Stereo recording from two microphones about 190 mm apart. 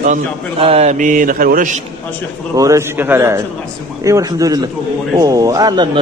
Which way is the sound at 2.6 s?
15° right (ahead or behind).